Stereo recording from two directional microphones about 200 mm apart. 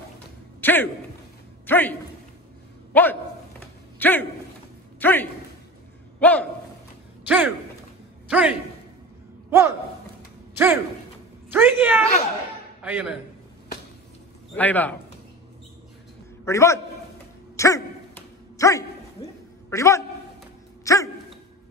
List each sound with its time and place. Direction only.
0.6 s a sound: 10° left (ahead or behind)
1.7 s a man's voice: 10° left (ahead or behind)
7.2 s a man's voice: 10° right (ahead or behind)
10.5 s a sound: 10° right (ahead or behind)
11.5 s a woman's voice: 10° right (ahead or behind)
14.5 s a man's voice: 10° left (ahead or behind)
16.4 s a man's voice: 15° left (ahead or behind)
17.6 s dog: 15° left (ahead or behind)
19.2 s a sound: 20° left (ahead or behind)
19.7 s a man's voice: 15° left (ahead or behind)
20.8 s dog: 15° left (ahead or behind)